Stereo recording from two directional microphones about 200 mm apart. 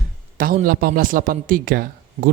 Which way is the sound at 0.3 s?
45° right (ahead or behind).